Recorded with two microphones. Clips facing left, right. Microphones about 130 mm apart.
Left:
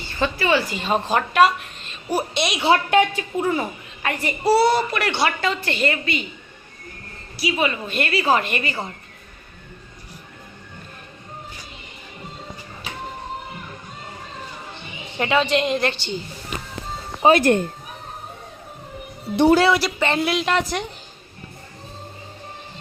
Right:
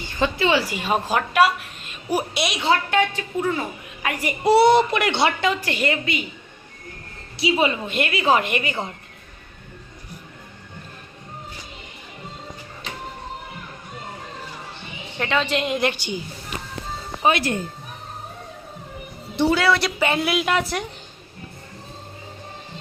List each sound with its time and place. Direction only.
0.0 s a woman's voice: 15° right (ahead or behind)
2.6 s speech: 20° left (ahead or behind)
4.0 s a woman's voice: 10° right (ahead or behind)
7.3 s a woman's voice: 25° right (ahead or behind)
15.2 s a woman's voice: 5° left (ahead or behind); by 16.2 s 10° right (ahead or behind)
17.4 s speech: 65° left (ahead or behind)
20.0 s speech: 5° right (ahead or behind)